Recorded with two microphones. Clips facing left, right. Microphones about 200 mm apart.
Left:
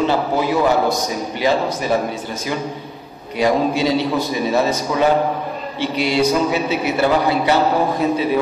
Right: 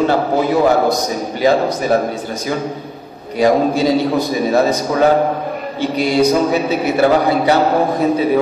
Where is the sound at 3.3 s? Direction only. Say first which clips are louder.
Right 4 dB; 40° right (ahead or behind).